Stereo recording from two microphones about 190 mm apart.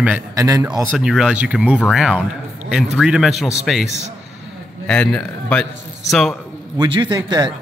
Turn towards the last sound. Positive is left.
turn(degrees=-20)  # may be behind; listen again after turning